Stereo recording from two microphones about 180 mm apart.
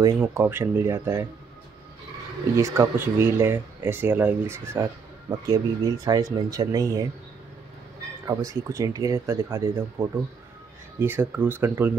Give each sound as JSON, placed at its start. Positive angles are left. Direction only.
{"t": 0.0, "sound": "speech", "side_deg": -10}
{"t": 2.5, "sound": "speech", "side_deg": -15}
{"t": 5.5, "sound": "speech", "side_deg": -20}
{"t": 8.3, "sound": "speech", "side_deg": -20}